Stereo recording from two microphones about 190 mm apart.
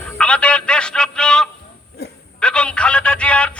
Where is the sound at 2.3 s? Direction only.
5° left (ahead or behind).